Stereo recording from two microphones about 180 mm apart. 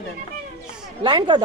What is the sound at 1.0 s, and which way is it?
Speech, 25° right (ahead or behind).